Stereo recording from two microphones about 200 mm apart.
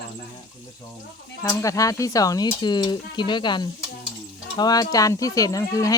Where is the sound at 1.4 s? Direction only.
15° left (ahead or behind).